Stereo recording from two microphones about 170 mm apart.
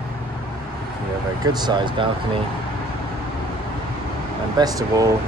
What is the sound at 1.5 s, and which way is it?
Speech, 25° right (ahead or behind).